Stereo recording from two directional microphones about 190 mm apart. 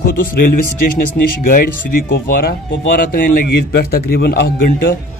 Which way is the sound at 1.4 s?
50° left (ahead or behind).